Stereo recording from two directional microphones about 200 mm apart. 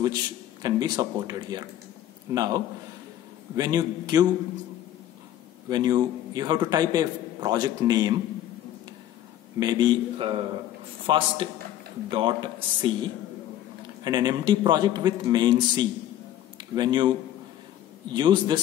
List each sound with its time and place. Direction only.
0.0 s a man's voice: 20° right (ahead or behind)
5.7 s a man's voice: 20° right (ahead or behind)
9.6 s a man's voice: 20° right (ahead or behind)
14.0 s a man's voice: 20° right (ahead or behind)
18.1 s a man's voice: 25° right (ahead or behind)